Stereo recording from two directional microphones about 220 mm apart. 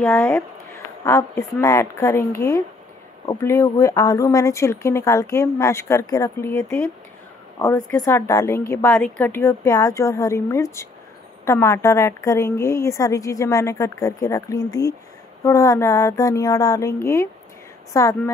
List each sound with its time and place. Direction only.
0.0 s speech: 5° left (ahead or behind)